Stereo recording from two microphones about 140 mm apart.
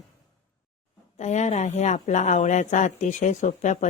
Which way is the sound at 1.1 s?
55° left (ahead or behind).